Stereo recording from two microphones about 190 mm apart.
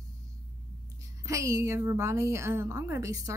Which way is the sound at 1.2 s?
15° right (ahead or behind).